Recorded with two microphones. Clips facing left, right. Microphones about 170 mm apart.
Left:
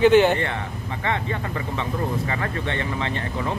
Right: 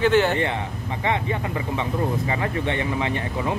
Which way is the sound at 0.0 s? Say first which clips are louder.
Left 4 dB; 15° left (ahead or behind).